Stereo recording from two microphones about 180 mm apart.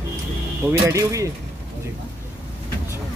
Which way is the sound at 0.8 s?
15° right (ahead or behind).